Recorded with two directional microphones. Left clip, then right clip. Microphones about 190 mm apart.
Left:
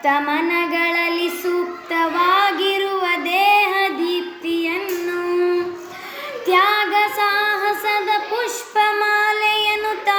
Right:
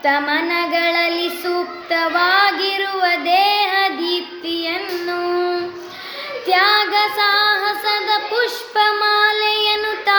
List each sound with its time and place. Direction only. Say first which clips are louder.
0.0 s child singing: right 1 dB; 20° right (ahead or behind)
6.5 s child singing: right 1 dB; 20° right (ahead or behind)